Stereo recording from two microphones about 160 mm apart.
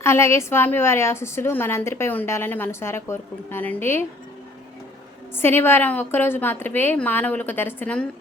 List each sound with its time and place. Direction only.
0.0 s a woman's voice: 15° left (ahead or behind)
5.3 s a woman's voice: 15° left (ahead or behind)